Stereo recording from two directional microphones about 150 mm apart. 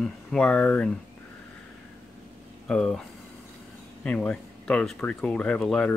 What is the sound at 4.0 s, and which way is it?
Speech, 5° left (ahead or behind).